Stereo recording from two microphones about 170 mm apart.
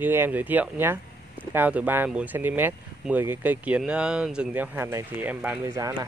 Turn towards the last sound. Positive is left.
turn(degrees=-20)  # may be behind; listen again after turning